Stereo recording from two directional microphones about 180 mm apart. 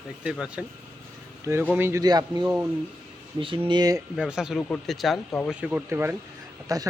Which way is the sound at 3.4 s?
30° right (ahead or behind).